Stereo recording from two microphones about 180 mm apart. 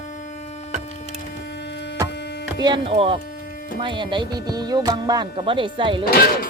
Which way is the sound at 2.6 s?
25° right (ahead or behind).